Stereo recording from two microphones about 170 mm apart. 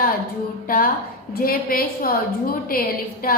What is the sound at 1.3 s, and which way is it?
A woman's voice, 60° left (ahead or behind).